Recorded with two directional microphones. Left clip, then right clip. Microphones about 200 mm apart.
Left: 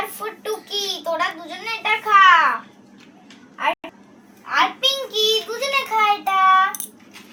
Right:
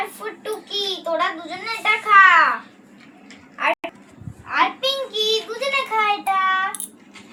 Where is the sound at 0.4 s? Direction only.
15° left (ahead or behind).